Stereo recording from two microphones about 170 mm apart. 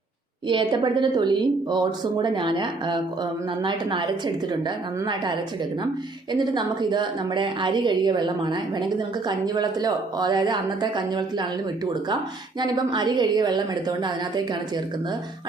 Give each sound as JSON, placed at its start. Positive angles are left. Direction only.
{"t": 0.4, "sound": "speech", "side_deg": -25}
{"t": 6.4, "sound": "speech", "side_deg": -25}
{"t": 12.5, "sound": "speech", "side_deg": -25}